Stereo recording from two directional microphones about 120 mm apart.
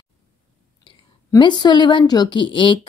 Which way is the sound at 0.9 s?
45° left (ahead or behind).